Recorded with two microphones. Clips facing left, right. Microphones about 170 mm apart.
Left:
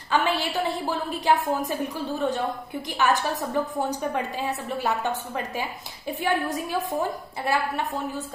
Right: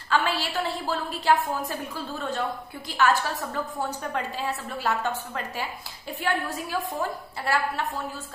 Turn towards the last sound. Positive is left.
turn(degrees=20)  # may be behind; listen again after turning